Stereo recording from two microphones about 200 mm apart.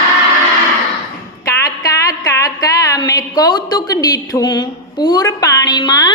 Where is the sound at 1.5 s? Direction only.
15° left (ahead or behind).